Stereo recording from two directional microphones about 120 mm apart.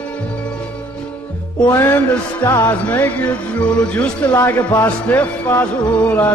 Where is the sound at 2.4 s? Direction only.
15° left (ahead or behind).